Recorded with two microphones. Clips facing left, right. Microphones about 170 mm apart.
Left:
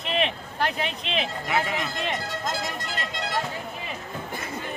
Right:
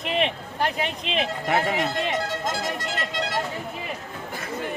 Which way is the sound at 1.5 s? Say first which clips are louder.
Right 5 dB; 60° right (ahead or behind).